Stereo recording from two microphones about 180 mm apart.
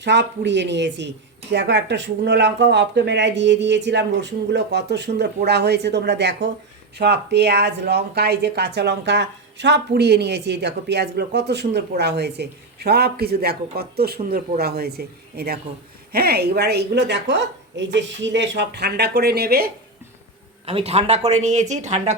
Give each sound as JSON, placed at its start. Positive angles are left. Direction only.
{"t": 0.0, "sound": "a woman's voice", "side_deg": -75}
{"t": 20.7, "sound": "speech", "side_deg": -35}